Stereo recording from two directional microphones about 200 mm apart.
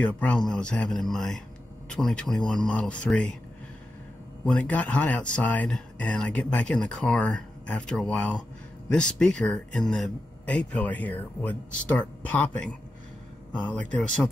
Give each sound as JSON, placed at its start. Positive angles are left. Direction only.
{"t": 0.0, "sound": "speech", "side_deg": 5}
{"t": 4.5, "sound": "speech", "side_deg": 5}